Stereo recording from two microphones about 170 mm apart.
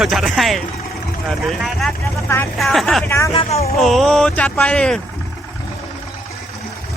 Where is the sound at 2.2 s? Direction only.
15° left (ahead or behind).